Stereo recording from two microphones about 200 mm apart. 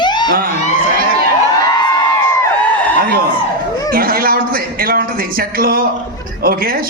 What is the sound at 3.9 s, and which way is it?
A man's voice, 45° right (ahead or behind).